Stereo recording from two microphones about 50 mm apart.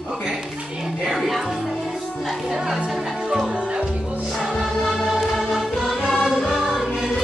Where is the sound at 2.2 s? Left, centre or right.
Centre.